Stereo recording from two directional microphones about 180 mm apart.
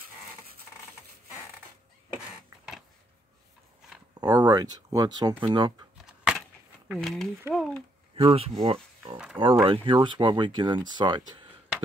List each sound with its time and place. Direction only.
4.2 s speech: 20° right (ahead or behind)
6.0 s a sound: 5° right (ahead or behind)
6.9 s speech: centre (ahead or behind)
8.1 s speech: 30° right (ahead or behind)
9.1 s speech: 5° right (ahead or behind)
9.4 s speech: 30° right (ahead or behind)